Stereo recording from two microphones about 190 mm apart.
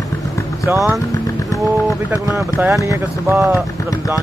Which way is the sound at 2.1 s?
15° right (ahead or behind).